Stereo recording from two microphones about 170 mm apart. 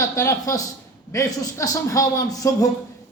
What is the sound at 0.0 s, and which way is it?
A man's voice, 20° left (ahead or behind).